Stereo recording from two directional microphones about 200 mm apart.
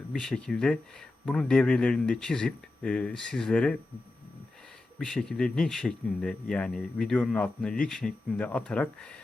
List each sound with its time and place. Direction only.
0.1 s speech: centre (ahead or behind)
4.9 s speech: centre (ahead or behind)